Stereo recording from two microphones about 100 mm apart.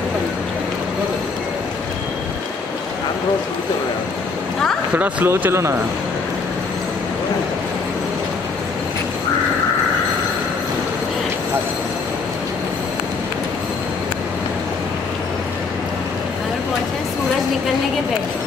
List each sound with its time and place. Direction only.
4.9 s speech: 20° right (ahead or behind)